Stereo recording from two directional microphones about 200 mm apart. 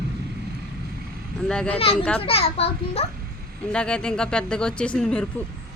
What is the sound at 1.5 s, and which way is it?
Speech, 5° left (ahead or behind).